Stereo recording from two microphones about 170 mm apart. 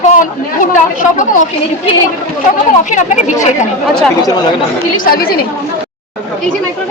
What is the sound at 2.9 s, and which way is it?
Speech, 45° left (ahead or behind).